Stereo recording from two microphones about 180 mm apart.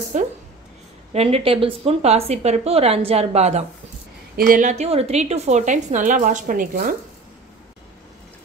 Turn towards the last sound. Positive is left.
turn(degrees=-50)  # may be behind; listen again after turning